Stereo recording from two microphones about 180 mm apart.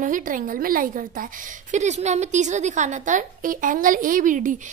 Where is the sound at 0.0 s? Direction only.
45° right (ahead or behind).